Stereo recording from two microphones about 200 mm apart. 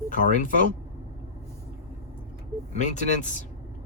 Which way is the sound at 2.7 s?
35° left (ahead or behind).